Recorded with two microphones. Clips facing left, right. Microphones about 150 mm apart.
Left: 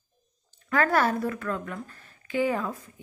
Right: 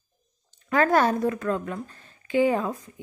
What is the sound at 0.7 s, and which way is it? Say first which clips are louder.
Speech: right 3 dB; 20° right (ahead or behind).